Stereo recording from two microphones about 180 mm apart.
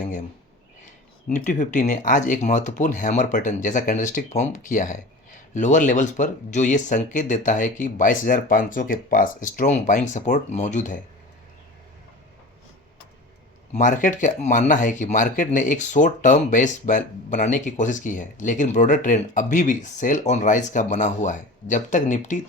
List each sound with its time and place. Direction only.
1.3 s speech: 45° left (ahead or behind)
13.7 s speech: 45° left (ahead or behind)